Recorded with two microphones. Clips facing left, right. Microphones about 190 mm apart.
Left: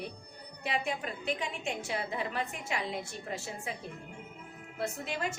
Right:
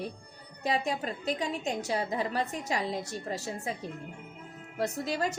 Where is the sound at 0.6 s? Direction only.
40° right (ahead or behind).